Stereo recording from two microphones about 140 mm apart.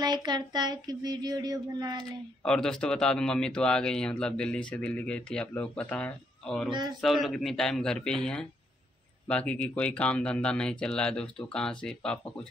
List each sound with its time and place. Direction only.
0.0 s child singing: 30° right (ahead or behind)
2.4 s speech: 5° left (ahead or behind)